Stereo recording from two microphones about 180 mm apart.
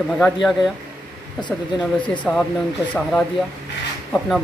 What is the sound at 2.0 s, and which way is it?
Speech, 5° left (ahead or behind).